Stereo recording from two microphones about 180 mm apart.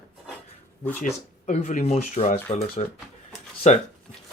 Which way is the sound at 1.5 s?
40° left (ahead or behind).